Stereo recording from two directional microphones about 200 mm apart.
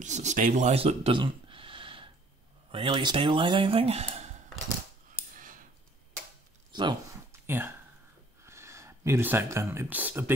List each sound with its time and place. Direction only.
0.0 s speech: 35° right (ahead or behind)
5.3 s a sound: 40° right (ahead or behind)
6.7 s speech: 20° right (ahead or behind)
7.4 s speech: 10° right (ahead or behind)